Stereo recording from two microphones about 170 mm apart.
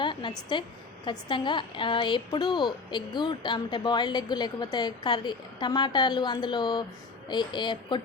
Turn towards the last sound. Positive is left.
turn(degrees=25)  # may be behind; listen again after turning